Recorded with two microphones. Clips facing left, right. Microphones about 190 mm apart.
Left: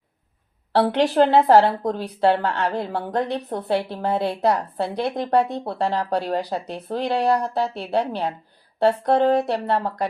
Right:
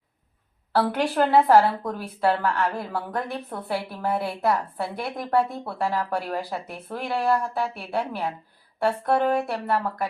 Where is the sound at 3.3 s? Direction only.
40° left (ahead or behind).